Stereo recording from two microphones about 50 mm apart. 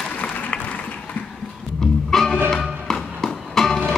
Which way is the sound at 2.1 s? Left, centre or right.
Centre.